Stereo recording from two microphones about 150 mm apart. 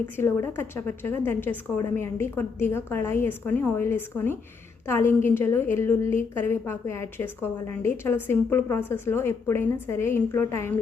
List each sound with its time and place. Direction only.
0.0 s a woman's voice: 15° left (ahead or behind)